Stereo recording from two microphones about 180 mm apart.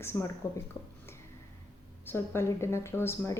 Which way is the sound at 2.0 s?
15° left (ahead or behind).